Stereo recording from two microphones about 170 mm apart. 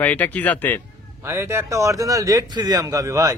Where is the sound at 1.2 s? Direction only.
15° right (ahead or behind).